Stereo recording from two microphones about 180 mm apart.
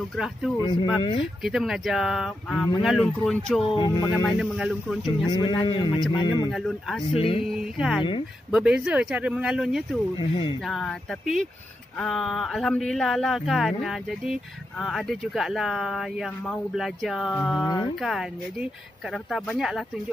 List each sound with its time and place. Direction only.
0.1 s a man's voice: centre (ahead or behind)
0.6 s a man's voice: 25° left (ahead or behind)
1.4 s a man's voice: 5° right (ahead or behind)
3.7 s a man's voice: 25° left (ahead or behind)
4.4 s a man's voice: 5° right (ahead or behind)
5.3 s a man's voice: 25° left (ahead or behind)
6.5 s a man's voice: centre (ahead or behind)
7.2 s speech: 30° left (ahead or behind)
7.4 s a man's voice: 5° right (ahead or behind)
10.1 s a man's voice: 30° left (ahead or behind)
10.6 s a man's voice: centre (ahead or behind)